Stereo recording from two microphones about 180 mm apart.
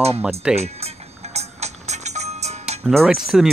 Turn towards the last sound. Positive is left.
turn(degrees=0)  # may be behind; listen again after turning